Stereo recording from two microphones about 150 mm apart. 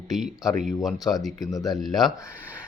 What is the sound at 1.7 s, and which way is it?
Speech, centre (ahead or behind).